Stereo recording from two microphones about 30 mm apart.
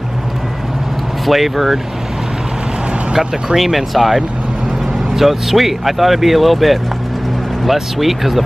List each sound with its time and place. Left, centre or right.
1.2 s speech: centre
3.1 s speech: right
3.5 s speech: centre